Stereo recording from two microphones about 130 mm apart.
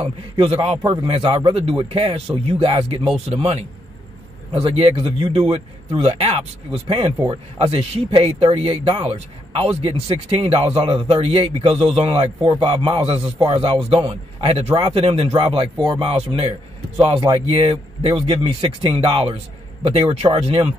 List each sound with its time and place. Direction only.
0.0 s speech: 45° right (ahead or behind)
0.8 s speech: 35° right (ahead or behind)
4.6 s speech: 45° right (ahead or behind)
6.9 s speech: 35° right (ahead or behind)
7.5 s speech: 50° right (ahead or behind)
12.1 s speech: 35° right (ahead or behind)
13.5 s speech: 50° right (ahead or behind)